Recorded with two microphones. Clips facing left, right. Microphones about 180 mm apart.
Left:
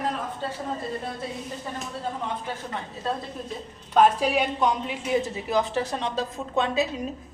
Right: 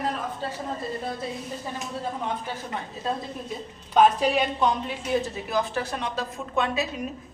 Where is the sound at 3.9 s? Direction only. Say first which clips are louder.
Even; 10° left (ahead or behind).